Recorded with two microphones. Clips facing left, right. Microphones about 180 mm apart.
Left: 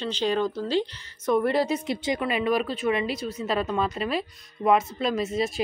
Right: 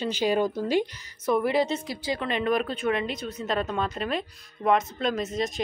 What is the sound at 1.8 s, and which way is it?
Speech, 20° left (ahead or behind).